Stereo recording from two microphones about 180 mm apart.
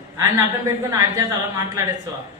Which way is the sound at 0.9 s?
20° right (ahead or behind).